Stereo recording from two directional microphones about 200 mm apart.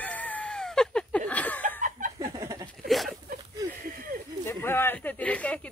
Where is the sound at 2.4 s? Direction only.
15° right (ahead or behind).